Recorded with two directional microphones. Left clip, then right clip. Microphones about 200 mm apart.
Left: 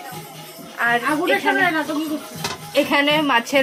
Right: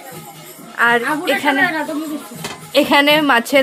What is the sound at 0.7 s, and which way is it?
Speech, 50° right (ahead or behind).